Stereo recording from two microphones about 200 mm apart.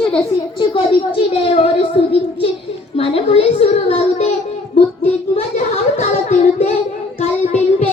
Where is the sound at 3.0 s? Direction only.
30° left (ahead or behind).